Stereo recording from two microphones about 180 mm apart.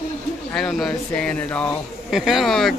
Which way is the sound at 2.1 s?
Centre (ahead or behind).